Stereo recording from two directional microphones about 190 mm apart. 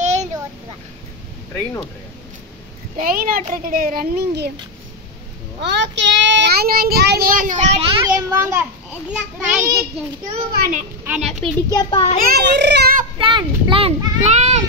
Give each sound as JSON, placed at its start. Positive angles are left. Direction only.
{"t": 0.0, "sound": "a sound", "side_deg": -35}
{"t": 3.0, "sound": "a child's voice", "side_deg": -50}
{"t": 5.6, "sound": "a child's voice", "side_deg": -65}
{"t": 8.0, "sound": "a child's voice", "side_deg": -15}
{"t": 10.5, "sound": "a child's voice", "side_deg": -45}
{"t": 11.1, "sound": "a child's voice", "side_deg": 0}
{"t": 11.7, "sound": "a child's voice", "side_deg": 30}
{"t": 12.4, "sound": "a child's voice", "side_deg": -65}
{"t": 13.2, "sound": "a child's voice", "side_deg": -25}